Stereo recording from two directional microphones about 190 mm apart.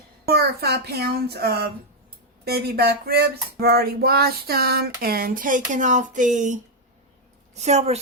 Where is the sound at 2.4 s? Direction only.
55° right (ahead or behind); by 6.5 s 40° right (ahead or behind).